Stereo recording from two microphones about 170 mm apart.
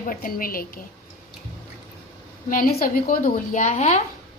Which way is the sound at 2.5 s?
60° left (ahead or behind).